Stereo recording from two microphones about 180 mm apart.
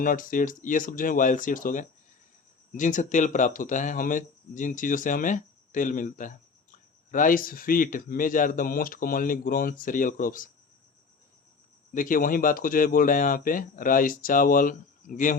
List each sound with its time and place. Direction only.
0.0 s speech: 50° left (ahead or behind)
11.9 s speech: 50° left (ahead or behind)